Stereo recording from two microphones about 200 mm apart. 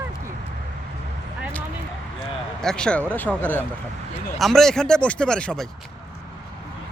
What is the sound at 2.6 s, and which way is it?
Speech, 5° left (ahead or behind).